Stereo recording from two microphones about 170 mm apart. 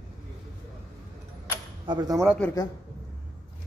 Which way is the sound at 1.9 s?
25° right (ahead or behind).